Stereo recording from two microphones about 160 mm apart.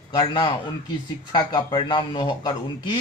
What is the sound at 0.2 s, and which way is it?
Speech, 30° left (ahead or behind).